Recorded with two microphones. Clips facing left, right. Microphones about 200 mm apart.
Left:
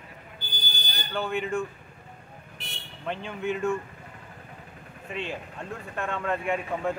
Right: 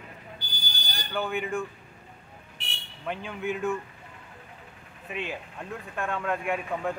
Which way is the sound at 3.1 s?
5° right (ahead or behind).